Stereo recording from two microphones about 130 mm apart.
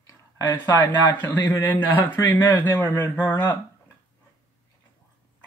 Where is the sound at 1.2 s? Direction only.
15° left (ahead or behind).